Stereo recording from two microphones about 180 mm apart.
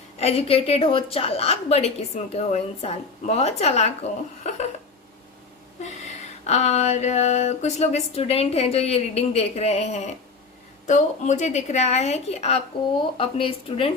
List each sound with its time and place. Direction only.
0.2 s a woman's voice: 35° left (ahead or behind)
4.4 s a sound: 40° left (ahead or behind)
6.4 s a woman's voice: 40° left (ahead or behind)